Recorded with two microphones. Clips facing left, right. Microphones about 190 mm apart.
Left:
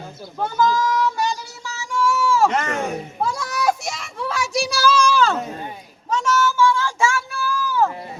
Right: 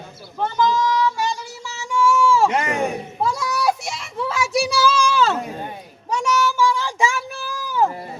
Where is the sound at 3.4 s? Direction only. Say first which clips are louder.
Even; 45° left (ahead or behind).